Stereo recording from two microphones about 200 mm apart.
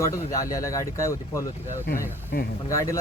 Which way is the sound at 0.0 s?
15° left (ahead or behind).